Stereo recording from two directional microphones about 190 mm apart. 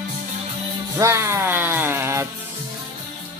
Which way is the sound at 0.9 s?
15° right (ahead or behind).